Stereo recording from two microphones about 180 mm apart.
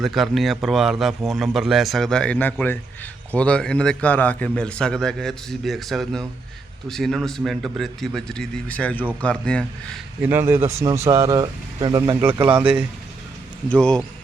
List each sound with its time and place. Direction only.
0.0 s a man's voice: centre (ahead or behind)
10.2 s a man's voice: 10° right (ahead or behind)
12.2 s a man's voice: 10° right (ahead or behind)
13.7 s a man's voice: 5° left (ahead or behind)